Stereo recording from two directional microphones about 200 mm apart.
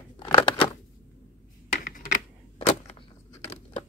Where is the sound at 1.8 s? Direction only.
40° left (ahead or behind).